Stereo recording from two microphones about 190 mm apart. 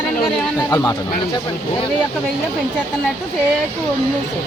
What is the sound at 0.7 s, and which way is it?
Speech, 20° left (ahead or behind).